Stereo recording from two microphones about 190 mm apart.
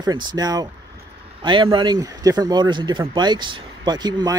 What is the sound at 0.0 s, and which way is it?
Speech, 20° right (ahead or behind).